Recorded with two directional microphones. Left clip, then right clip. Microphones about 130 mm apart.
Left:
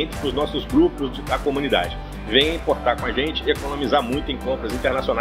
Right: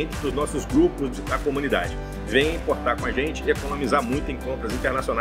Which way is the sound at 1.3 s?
30° right (ahead or behind).